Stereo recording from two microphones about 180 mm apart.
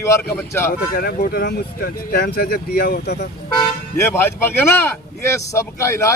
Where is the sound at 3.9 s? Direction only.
15° left (ahead or behind).